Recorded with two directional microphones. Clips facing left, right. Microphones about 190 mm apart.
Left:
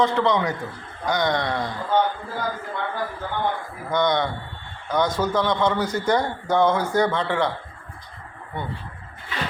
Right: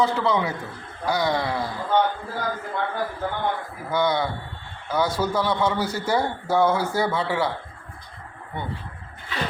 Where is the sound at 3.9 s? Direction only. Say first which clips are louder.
Left 1 dB; 5° right (ahead or behind).